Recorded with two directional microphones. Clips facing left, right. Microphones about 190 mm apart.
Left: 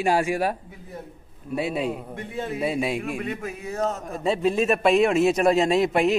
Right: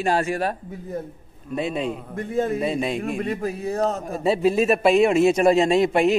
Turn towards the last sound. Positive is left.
turn(degrees=0)  # may be behind; listen again after turning